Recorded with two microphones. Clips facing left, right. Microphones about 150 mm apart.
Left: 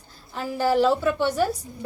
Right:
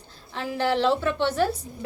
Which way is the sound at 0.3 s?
5° left (ahead or behind).